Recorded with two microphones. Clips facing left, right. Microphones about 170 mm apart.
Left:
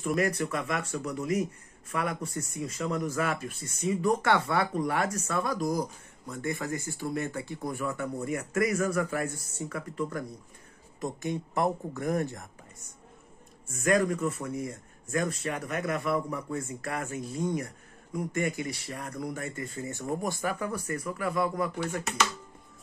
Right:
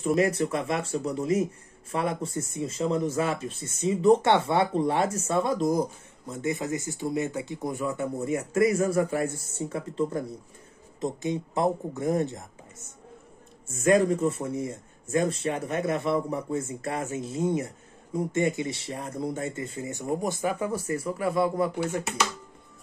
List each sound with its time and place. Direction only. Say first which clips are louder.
0.0 s speech: right 4 dB; 25° right (ahead or behind)
13.7 s speech: right 4 dB; 25° right (ahead or behind)